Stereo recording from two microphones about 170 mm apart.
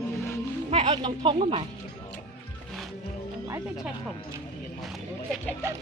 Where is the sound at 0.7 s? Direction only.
35° right (ahead or behind).